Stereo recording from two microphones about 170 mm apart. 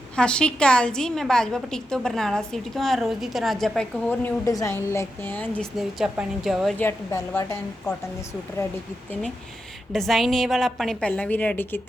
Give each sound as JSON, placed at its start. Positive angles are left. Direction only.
{"t": 0.2, "sound": "a woman's voice", "side_deg": 5}
{"t": 6.7, "sound": "a woman's voice", "side_deg": 15}
{"t": 9.9, "sound": "a woman's voice", "side_deg": 0}